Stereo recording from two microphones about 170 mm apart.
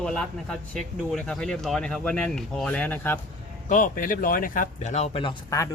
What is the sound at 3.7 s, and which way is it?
Speech, 50° left (ahead or behind).